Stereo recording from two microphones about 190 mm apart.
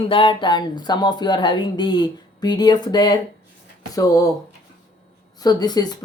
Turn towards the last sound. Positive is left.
turn(degrees=20)  # may be behind; listen again after turning